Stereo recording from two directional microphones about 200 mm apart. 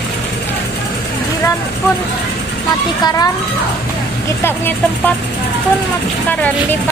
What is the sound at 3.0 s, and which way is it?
Speech, 20° left (ahead or behind).